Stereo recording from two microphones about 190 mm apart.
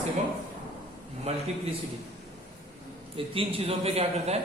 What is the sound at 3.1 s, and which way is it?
A man's voice, 30° right (ahead or behind).